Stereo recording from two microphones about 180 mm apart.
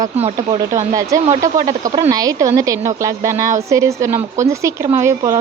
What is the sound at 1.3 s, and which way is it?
Speech, 45° right (ahead or behind).